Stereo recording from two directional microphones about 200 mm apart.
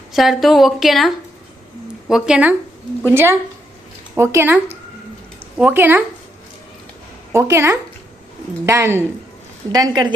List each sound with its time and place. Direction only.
0.1 s a woman's voice: centre (ahead or behind)
7.3 s speech: 15° right (ahead or behind)